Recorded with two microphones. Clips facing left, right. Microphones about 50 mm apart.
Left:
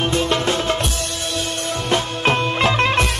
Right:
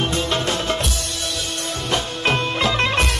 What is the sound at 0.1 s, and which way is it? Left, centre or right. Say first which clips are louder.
Music: left 3 dB; left.